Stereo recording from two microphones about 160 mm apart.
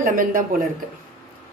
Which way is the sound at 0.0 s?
60° right (ahead or behind).